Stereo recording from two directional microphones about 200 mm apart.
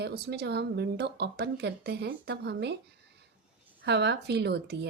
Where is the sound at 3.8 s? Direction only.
60° right (ahead or behind).